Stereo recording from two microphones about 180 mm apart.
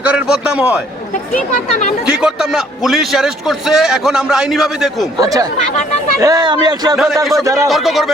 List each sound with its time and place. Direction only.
0.0 s a man's voice: 5° right (ahead or behind)
2.0 s a man's voice: 5° right (ahead or behind)
5.2 s speech: 20° right (ahead or behind)
6.9 s a man's voice: centre (ahead or behind)
7.4 s a man's voice: 15° right (ahead or behind)
7.7 s a man's voice: centre (ahead or behind)